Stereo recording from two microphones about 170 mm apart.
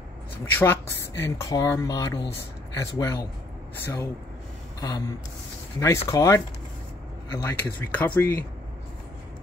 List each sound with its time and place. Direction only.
0.6 s speech: 15° left (ahead or behind)
7.4 s speech: 10° left (ahead or behind)